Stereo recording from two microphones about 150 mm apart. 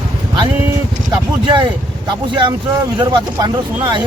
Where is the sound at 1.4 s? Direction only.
35° right (ahead or behind).